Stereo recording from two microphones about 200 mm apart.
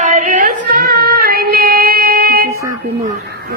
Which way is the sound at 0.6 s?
50° right (ahead or behind).